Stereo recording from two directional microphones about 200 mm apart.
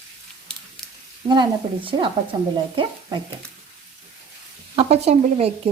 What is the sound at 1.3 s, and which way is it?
Speech, 25° right (ahead or behind).